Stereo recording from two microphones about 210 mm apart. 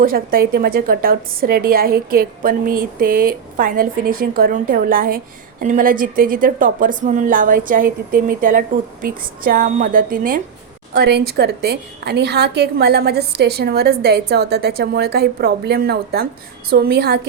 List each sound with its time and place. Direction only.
0.0 s a woman's voice: 45° right (ahead or behind)